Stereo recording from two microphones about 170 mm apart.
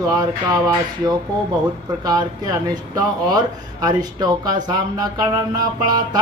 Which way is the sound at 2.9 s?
25° right (ahead or behind).